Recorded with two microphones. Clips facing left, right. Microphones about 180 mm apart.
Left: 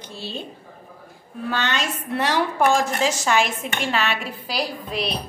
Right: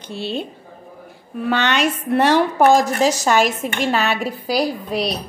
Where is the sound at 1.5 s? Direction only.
70° right (ahead or behind); by 4.3 s 40° right (ahead or behind).